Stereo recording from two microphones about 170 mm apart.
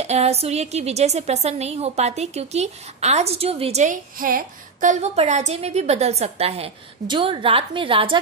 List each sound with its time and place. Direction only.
0.0 s a woman's voice: 40° right (ahead or behind)